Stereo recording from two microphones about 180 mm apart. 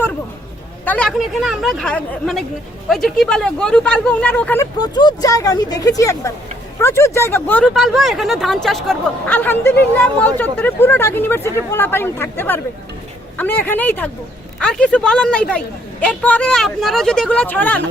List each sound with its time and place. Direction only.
0.9 s a woman's voice: 5° left (ahead or behind)
4.8 s speech: 25° left (ahead or behind)
7.7 s a woman's voice: centre (ahead or behind)